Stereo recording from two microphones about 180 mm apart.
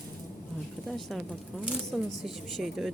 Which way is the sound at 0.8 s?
Centre (ahead or behind).